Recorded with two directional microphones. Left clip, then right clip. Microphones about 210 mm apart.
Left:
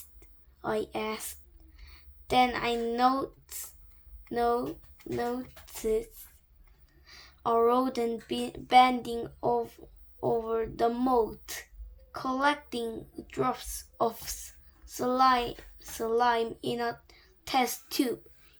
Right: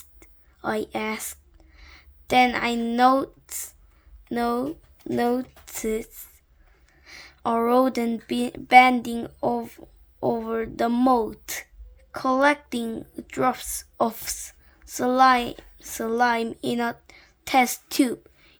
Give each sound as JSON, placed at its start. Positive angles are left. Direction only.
{"t": 0.2, "sound": "a woman's voice", "side_deg": -45}